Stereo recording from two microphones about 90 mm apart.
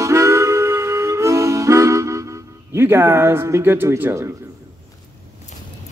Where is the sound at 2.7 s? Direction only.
25° right (ahead or behind).